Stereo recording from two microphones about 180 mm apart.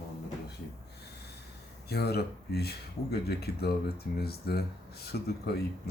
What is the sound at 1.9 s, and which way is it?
Speech, 65° left (ahead or behind).